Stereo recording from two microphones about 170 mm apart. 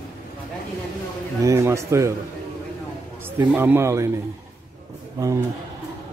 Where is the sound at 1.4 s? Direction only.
15° right (ahead or behind).